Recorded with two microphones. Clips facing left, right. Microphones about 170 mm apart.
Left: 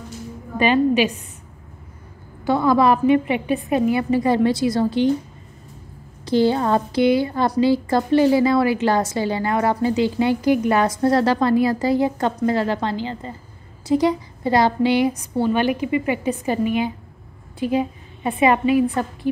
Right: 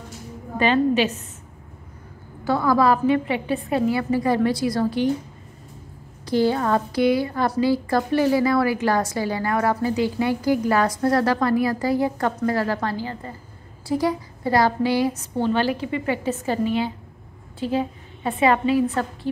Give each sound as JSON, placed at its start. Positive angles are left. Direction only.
{"t": 0.6, "sound": "a woman's voice", "side_deg": 15}
{"t": 2.4, "sound": "a woman's voice", "side_deg": 20}
{"t": 6.2, "sound": "a woman's voice", "side_deg": 25}